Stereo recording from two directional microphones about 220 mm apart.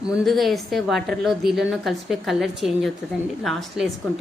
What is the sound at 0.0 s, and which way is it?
A woman's voice, centre (ahead or behind).